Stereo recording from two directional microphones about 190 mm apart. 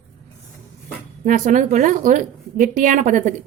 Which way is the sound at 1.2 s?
45° right (ahead or behind).